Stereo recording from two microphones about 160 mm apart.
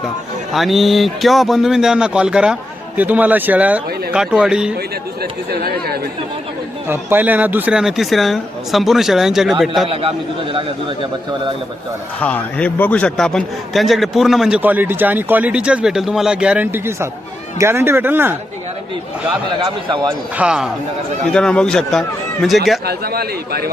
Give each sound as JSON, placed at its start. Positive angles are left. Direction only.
{"t": 0.5, "sound": "a man's voice", "side_deg": 0}
{"t": 5.2, "sound": "a man's voice", "side_deg": -75}
{"t": 6.8, "sound": "a man's voice", "side_deg": -15}
{"t": 9.9, "sound": "a man's voice", "side_deg": -35}
{"t": 12.2, "sound": "a man's voice", "side_deg": 10}
{"t": 19.6, "sound": "a man's voice", "side_deg": -30}
{"t": 20.3, "sound": "speech", "side_deg": -5}
{"t": 21.3, "sound": "a man's voice", "side_deg": 5}
{"t": 22.9, "sound": "a man's voice", "side_deg": -80}